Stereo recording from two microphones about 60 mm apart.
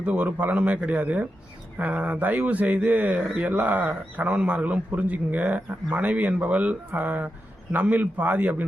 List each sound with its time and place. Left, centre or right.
0.0 s a man's voice: right